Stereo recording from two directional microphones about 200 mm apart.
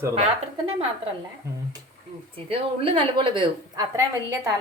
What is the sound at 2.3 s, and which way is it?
A woman's voice, 30° right (ahead or behind).